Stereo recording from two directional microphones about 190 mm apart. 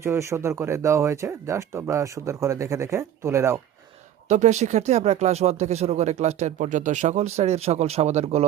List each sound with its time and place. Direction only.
0.0 s speech: 15° right (ahead or behind)
4.3 s speech: 35° right (ahead or behind)